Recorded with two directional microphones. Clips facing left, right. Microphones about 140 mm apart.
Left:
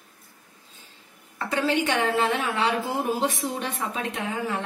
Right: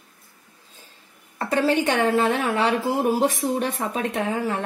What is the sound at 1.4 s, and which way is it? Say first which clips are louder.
A woman's voice: right 4 dB; 40° right (ahead or behind).